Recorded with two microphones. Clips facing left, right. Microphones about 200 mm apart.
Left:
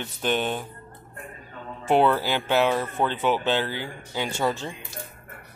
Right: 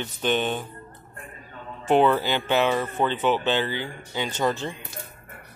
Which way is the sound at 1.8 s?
5° left (ahead or behind).